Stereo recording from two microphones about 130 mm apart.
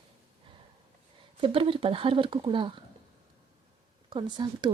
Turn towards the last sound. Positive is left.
turn(degrees=-35)  # may be behind; listen again after turning